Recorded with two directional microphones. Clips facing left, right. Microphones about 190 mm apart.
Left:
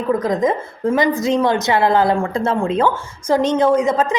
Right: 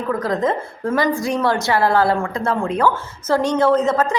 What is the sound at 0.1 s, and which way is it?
A woman's voice, 20° left (ahead or behind).